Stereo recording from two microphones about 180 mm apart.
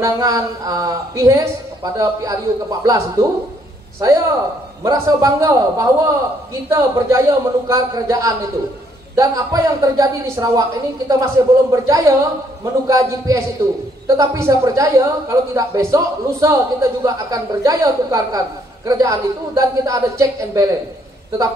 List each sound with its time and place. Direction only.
0.0 s a woman's voice: 20° right (ahead or behind)
4.8 s a woman's voice: 15° right (ahead or behind)